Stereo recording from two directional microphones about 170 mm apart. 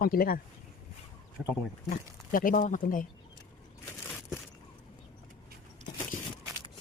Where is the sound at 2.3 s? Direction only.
55° left (ahead or behind).